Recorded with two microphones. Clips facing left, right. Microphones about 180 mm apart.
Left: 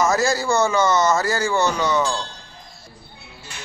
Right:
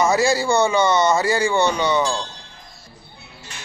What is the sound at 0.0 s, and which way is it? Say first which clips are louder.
A man's voice: right 2 dB; centre (ahead or behind).